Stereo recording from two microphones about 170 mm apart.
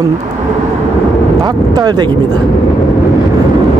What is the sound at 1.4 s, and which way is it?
Speech, 25° right (ahead or behind).